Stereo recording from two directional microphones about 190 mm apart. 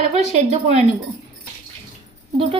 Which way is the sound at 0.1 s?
35° right (ahead or behind).